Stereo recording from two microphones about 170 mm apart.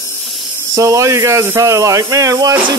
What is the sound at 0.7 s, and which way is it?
Speech, 20° right (ahead or behind).